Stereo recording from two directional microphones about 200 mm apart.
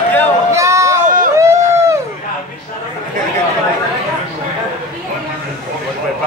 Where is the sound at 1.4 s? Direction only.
15° right (ahead or behind).